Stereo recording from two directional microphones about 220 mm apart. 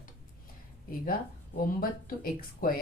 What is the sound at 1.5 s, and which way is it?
A woman's voice, 40° left (ahead or behind).